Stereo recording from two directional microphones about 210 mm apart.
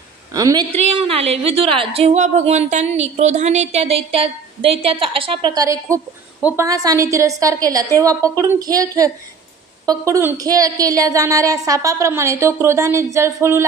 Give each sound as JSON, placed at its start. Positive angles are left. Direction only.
{"t": 0.3, "sound": "a woman's voice", "side_deg": -15}
{"t": 0.7, "sound": "a woman's voice", "side_deg": -25}